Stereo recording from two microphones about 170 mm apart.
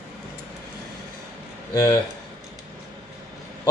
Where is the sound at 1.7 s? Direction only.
20° left (ahead or behind).